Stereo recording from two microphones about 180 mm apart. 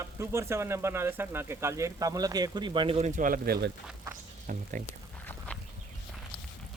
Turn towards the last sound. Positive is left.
turn(degrees=10)  # may be behind; listen again after turning